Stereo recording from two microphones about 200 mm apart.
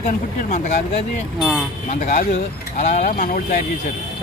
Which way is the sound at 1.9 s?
35° left (ahead or behind).